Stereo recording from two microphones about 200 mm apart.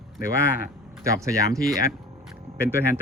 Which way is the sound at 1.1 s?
15° right (ahead or behind).